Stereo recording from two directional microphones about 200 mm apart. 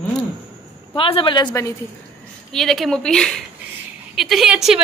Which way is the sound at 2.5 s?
Centre (ahead or behind).